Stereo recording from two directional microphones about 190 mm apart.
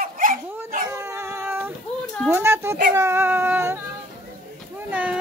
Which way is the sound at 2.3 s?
15° right (ahead or behind).